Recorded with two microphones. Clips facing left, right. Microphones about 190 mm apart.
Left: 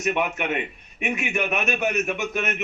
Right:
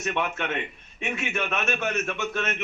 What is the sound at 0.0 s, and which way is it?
A man's voice, 15° left (ahead or behind).